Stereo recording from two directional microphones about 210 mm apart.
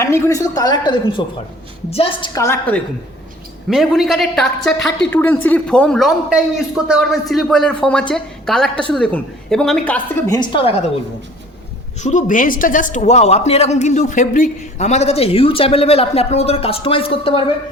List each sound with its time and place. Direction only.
0.0 s a woman's voice: 15° left (ahead or behind)
10.5 s a woman's voice: 25° left (ahead or behind)
11.9 s speech: 35° left (ahead or behind)